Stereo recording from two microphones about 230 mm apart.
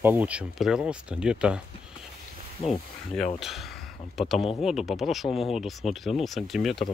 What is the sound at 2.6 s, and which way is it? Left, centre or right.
Speech, left.